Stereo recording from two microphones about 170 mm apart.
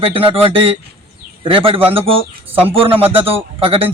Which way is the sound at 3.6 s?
35° right (ahead or behind).